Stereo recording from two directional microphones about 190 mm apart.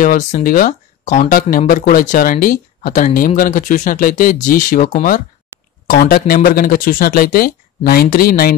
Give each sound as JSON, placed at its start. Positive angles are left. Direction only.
{"t": 0.0, "sound": "speech", "side_deg": 45}